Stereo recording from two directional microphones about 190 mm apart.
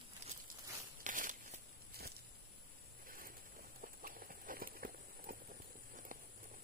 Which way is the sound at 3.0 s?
45° right (ahead or behind).